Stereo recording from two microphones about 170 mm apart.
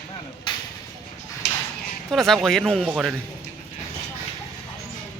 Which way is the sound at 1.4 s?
80° left.